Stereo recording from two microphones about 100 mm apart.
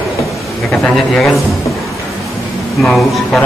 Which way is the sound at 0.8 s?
5° left (ahead or behind).